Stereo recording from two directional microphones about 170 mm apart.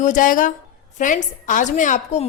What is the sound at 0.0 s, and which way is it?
A woman's voice, 50° left (ahead or behind).